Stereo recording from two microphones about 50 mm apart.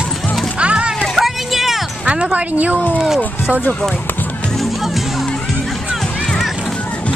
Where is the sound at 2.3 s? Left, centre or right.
Right.